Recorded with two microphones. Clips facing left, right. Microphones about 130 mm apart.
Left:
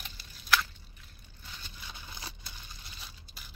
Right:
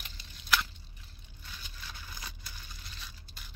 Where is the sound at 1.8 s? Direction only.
25° left (ahead or behind).